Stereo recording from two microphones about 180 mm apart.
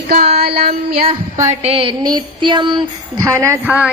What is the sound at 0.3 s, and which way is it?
Child singing, 60° right (ahead or behind).